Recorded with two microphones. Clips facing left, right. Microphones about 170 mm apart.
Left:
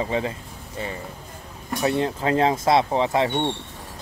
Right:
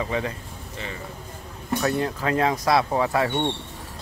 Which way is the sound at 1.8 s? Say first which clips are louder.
Left 3 dB; 25° left (ahead or behind).